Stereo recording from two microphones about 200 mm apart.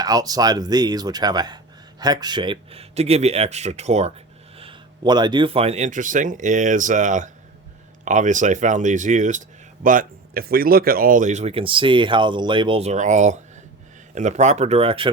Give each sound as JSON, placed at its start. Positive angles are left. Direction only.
{"t": 0.0, "sound": "speech", "side_deg": -20}
{"t": 4.6, "sound": "speech", "side_deg": -20}